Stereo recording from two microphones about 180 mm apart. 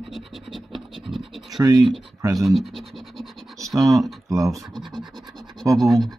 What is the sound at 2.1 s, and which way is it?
Speech, 20° right (ahead or behind).